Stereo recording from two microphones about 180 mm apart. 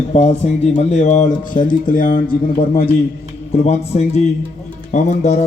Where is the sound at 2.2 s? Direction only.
30° left (ahead or behind).